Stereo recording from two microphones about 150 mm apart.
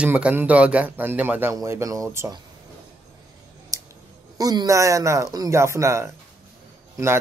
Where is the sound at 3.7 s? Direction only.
20° right (ahead or behind).